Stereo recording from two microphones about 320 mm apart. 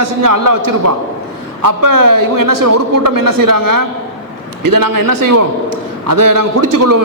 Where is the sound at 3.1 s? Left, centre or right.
Right.